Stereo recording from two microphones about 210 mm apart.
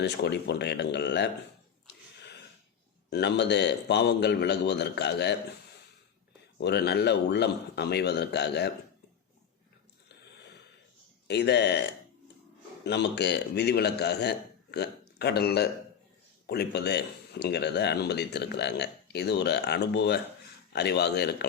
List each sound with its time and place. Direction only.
0.0 s speech: 55° left (ahead or behind)
1.9 s a sound: 55° left (ahead or behind)
3.1 s speech: 55° left (ahead or behind)
6.6 s speech: 55° left (ahead or behind)
11.3 s speech: 55° left (ahead or behind)
12.8 s speech: 55° left (ahead or behind)